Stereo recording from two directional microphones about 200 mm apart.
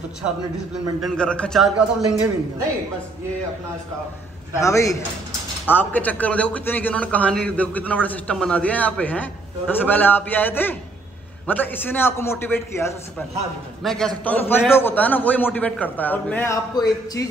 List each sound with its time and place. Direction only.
1.0 s a man's voice: 5° left (ahead or behind)
4.6 s a man's voice: 15° left (ahead or behind)
13.8 s a man's voice: 5° left (ahead or behind)
16.7 s speech: 20° left (ahead or behind)